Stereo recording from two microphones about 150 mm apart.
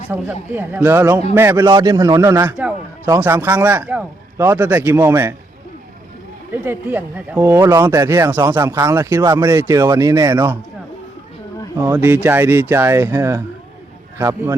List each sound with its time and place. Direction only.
0.1 s a man's voice: 15° right (ahead or behind)
6.5 s speech: 15° right (ahead or behind)
11.8 s speech: 15° right (ahead or behind)